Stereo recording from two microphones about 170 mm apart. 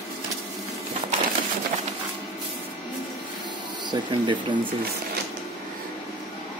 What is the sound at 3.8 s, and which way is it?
Speech, 25° right (ahead or behind).